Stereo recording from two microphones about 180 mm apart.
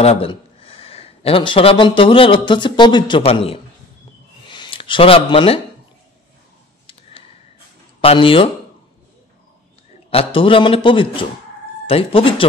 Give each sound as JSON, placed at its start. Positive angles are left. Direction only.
{"t": 0.0, "sound": "speech", "side_deg": 30}
{"t": 6.9, "sound": "a sound", "side_deg": 30}
{"t": 8.0, "sound": "a man's voice", "side_deg": 30}
{"t": 10.1, "sound": "a man's voice", "side_deg": 30}